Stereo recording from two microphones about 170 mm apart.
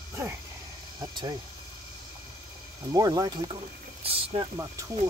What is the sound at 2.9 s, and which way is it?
Speech, 20° right (ahead or behind).